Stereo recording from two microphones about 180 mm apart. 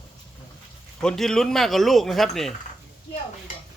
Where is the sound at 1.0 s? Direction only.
5° left (ahead or behind).